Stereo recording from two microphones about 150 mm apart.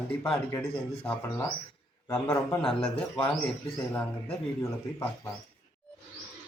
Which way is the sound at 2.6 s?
5° left (ahead or behind).